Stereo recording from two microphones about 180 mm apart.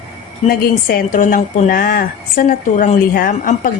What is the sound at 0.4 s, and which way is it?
A woman's voice, 55° left (ahead or behind).